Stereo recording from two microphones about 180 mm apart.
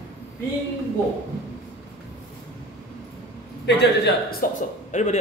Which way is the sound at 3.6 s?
60° left (ahead or behind).